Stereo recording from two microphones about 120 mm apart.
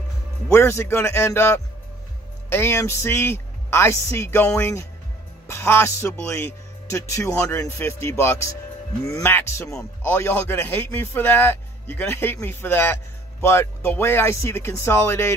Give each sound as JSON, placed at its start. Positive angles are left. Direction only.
{"t": 0.5, "sound": "a man's voice", "side_deg": 20}